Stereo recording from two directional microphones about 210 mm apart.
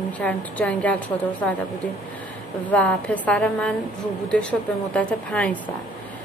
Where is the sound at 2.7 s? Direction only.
5° left (ahead or behind).